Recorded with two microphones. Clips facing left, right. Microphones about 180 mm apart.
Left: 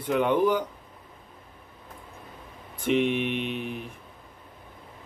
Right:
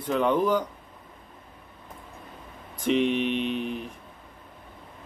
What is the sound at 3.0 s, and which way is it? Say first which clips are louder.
Mantra: right 1 dB; 55° left (ahead or behind).